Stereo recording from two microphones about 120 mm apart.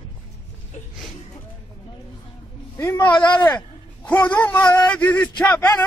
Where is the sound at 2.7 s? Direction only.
15° left (ahead or behind).